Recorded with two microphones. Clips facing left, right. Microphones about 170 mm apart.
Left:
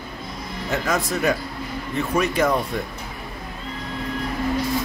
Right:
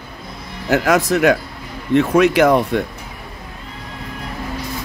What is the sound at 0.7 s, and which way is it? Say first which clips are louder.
Speech: right 9 dB; 80° right.